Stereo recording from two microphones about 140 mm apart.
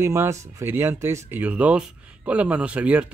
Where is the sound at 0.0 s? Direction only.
20° right (ahead or behind).